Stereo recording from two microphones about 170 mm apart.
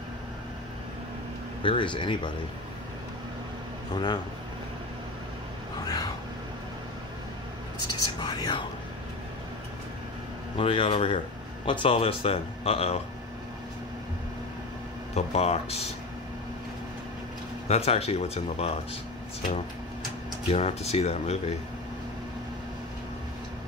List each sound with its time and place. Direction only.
1.6 s speech: 30° left (ahead or behind)
3.9 s speech: 25° left (ahead or behind)
5.9 s a sound: 20° left (ahead or behind)
7.9 s speech: 25° left (ahead or behind)
10.6 s speech: 30° left (ahead or behind)
15.1 s speech: 40° left (ahead or behind)
17.6 s speech: 35° left (ahead or behind)
20.4 s speech: 35° left (ahead or behind)